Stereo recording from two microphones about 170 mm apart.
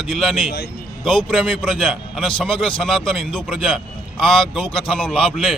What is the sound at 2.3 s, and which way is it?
Speech, 30° left (ahead or behind).